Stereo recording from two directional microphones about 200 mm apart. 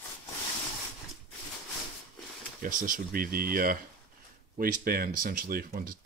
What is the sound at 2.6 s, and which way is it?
Speech, 45° right (ahead or behind).